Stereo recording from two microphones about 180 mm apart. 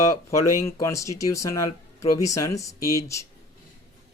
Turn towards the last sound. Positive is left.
turn(degrees=15)  # may be behind; listen again after turning